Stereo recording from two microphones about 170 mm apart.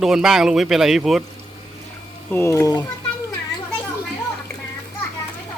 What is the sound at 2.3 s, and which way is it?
Speech, 15° left (ahead or behind).